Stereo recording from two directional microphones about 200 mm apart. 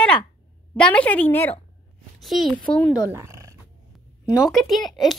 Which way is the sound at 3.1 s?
15° right (ahead or behind).